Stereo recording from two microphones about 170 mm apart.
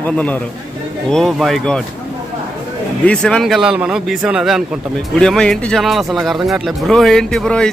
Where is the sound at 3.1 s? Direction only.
5° left (ahead or behind).